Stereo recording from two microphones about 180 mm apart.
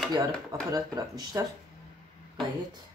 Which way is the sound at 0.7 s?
20° right (ahead or behind).